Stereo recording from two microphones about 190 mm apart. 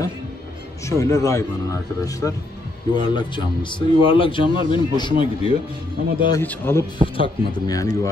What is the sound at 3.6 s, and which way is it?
A man's voice, 25° left (ahead or behind).